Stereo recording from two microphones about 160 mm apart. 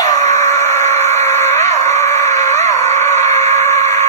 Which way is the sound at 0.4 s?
15° left (ahead or behind).